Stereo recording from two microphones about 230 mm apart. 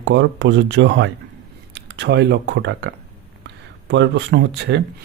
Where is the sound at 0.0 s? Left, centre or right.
Right.